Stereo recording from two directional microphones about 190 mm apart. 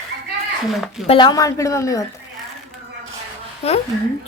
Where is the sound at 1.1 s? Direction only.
25° left (ahead or behind).